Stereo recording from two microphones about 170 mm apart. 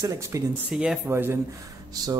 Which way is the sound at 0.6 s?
5° right (ahead or behind).